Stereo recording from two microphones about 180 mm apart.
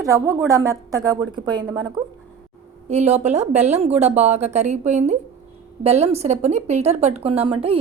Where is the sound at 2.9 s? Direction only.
40° right (ahead or behind).